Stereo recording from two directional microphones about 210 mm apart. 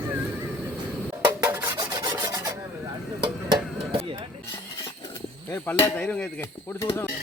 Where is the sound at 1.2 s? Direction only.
15° right (ahead or behind).